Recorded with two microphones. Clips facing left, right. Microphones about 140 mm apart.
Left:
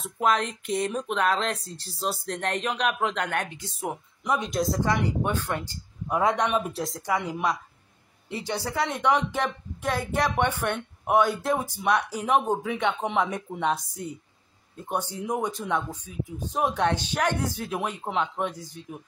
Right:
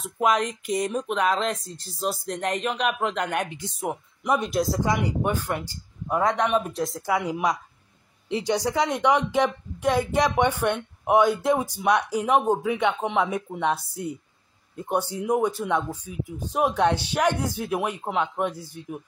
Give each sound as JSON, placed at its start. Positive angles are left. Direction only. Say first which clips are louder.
{"t": 0.0, "sound": "speech", "louder": "right 2 dB", "side_deg": -5}
{"t": 4.4, "sound": "speech", "louder": "right 2 dB", "side_deg": 0}
{"t": 4.8, "sound": "speech", "louder": "right 1 dB", "side_deg": -10}